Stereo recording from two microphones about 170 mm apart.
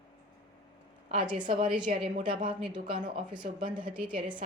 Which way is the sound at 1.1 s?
30° right (ahead or behind).